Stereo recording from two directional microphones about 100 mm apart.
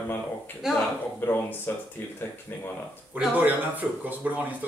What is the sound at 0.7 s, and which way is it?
Speech, 5° right (ahead or behind).